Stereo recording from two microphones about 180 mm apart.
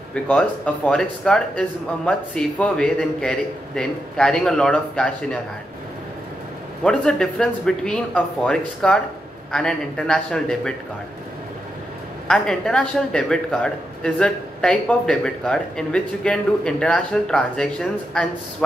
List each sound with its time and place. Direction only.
0.1 s speech: 5° left (ahead or behind)
6.8 s speech: 5° left (ahead or behind)
12.3 s speech: 5° left (ahead or behind)